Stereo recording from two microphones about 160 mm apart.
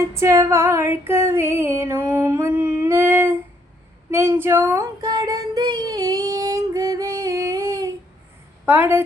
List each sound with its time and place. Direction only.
0.1 s female singing: 20° right (ahead or behind)
4.1 s a sound: 15° right (ahead or behind)
8.6 s female singing: 15° right (ahead or behind)